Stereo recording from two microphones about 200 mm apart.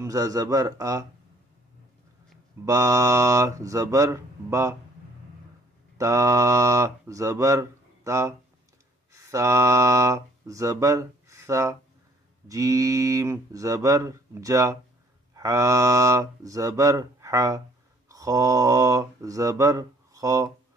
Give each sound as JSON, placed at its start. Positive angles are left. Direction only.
{"t": 0.0, "sound": "speech", "side_deg": -15}
{"t": 2.6, "sound": "speech", "side_deg": -15}
{"t": 5.9, "sound": "speech", "side_deg": -15}